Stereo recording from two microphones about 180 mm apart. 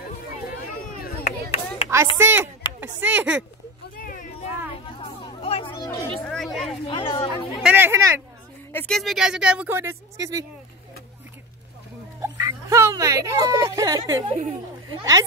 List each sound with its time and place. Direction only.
1.2 s chop: 35° left (ahead or behind)
2.1 s speech: 15° right (ahead or behind)
3.9 s a sound: 50° left (ahead or behind)
5.2 s children playing: 30° left (ahead or behind)
5.9 s speech: 5° left (ahead or behind)
6.9 s speech: 30° left (ahead or behind)
7.6 s a sound: 10° right (ahead or behind)
8.7 s speech: 5° left (ahead or behind); by 10.4 s 20° right (ahead or behind)
12.2 s speech: 15° right (ahead or behind)
14.2 s speech: 35° right (ahead or behind)
14.9 s a woman's voice: 20° right (ahead or behind)